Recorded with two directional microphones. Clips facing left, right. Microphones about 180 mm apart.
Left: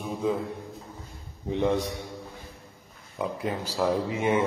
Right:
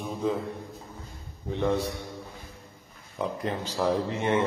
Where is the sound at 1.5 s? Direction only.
15° left (ahead or behind).